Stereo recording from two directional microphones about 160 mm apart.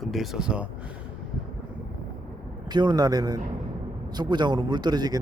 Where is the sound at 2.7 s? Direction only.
25° right (ahead or behind).